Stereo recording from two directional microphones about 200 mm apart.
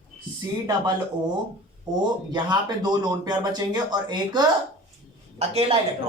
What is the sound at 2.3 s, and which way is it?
A man's voice, 20° right (ahead or behind).